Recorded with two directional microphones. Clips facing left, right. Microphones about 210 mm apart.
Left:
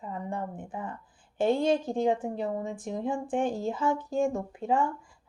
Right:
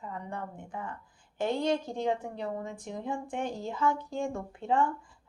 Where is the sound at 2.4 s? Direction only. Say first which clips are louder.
Left 4 dB; 25° left (ahead or behind).